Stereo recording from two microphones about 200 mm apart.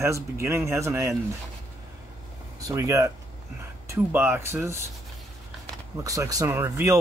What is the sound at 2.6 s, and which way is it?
Speech, 15° right (ahead or behind).